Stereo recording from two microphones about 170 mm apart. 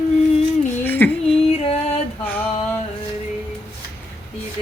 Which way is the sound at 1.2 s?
40° left (ahead or behind).